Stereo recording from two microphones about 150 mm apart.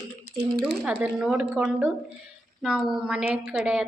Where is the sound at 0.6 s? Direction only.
5° right (ahead or behind).